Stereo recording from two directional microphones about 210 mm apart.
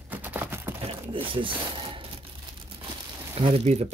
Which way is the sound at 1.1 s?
25° right (ahead or behind).